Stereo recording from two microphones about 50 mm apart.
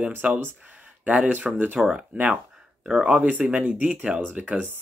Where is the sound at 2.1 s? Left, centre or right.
Right.